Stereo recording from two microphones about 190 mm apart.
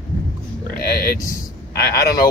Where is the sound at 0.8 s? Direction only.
50° left (ahead or behind).